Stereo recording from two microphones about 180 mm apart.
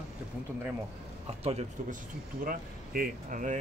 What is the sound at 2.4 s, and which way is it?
Speech, 50° right (ahead or behind).